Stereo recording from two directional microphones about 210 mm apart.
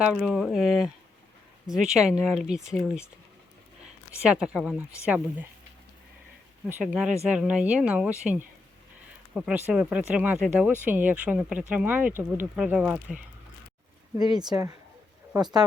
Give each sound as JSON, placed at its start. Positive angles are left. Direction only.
{"t": 0.0, "sound": "speech", "side_deg": -5}
{"t": 4.2, "sound": "speech", "side_deg": -5}
{"t": 6.7, "sound": "speech", "side_deg": -5}
{"t": 14.2, "sound": "speech", "side_deg": -20}